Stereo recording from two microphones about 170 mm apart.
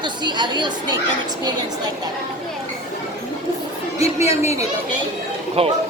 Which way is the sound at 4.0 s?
15° right (ahead or behind).